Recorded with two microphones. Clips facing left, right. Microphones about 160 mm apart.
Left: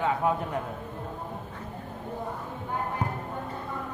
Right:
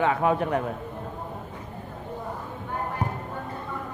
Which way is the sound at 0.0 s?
90° right.